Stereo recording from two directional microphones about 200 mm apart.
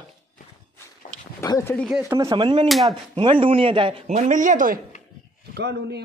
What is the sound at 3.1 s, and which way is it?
A man's voice, 25° right (ahead or behind).